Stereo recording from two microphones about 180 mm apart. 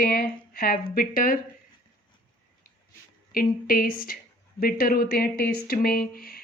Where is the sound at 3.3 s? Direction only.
50° left (ahead or behind).